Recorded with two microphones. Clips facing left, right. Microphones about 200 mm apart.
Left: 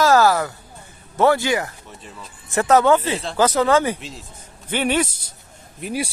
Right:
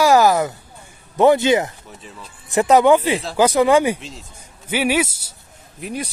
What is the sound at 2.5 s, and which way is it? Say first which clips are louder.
Speech: right 2 dB; 15° right (ahead or behind).